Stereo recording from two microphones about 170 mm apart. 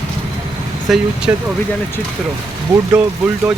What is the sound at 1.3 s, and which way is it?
Speech, 15° right (ahead or behind).